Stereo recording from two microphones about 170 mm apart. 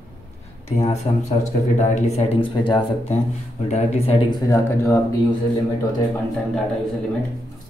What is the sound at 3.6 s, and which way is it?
Speech, 40° left (ahead or behind).